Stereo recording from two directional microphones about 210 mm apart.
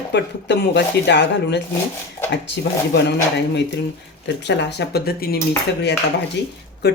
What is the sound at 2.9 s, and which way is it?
Speech, 55° left (ahead or behind).